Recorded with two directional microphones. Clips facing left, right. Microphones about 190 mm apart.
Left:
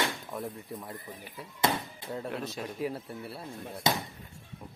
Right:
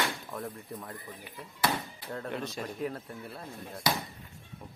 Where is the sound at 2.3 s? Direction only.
Centre (ahead or behind).